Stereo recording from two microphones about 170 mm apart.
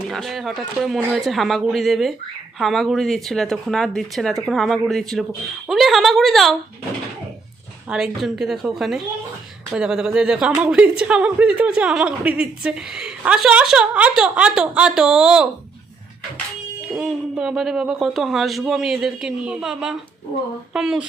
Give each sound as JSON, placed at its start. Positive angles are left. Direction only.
{"t": 0.1, "sound": "a woman's voice", "side_deg": 0}
{"t": 7.9, "sound": "a woman's voice", "side_deg": -5}
{"t": 16.9, "sound": "a woman's voice", "side_deg": -5}